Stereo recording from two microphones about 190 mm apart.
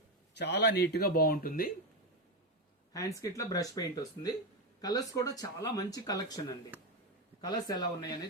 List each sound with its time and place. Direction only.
0.3 s speech: 65° left (ahead or behind)
2.9 s speech: 20° left (ahead or behind)
7.4 s speech: 20° left (ahead or behind)